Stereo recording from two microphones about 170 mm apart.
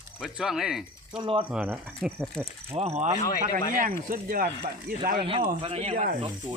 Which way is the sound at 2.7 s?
40° right (ahead or behind).